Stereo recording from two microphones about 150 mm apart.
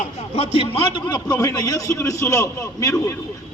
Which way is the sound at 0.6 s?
40° left (ahead or behind).